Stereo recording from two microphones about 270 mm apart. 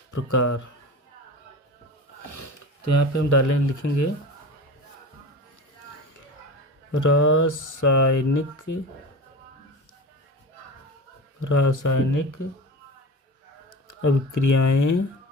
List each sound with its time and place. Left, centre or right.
0.1 s speech: left
2.2 s speech: left
6.9 s speech: left
11.4 s speech: left
13.8 s speech: left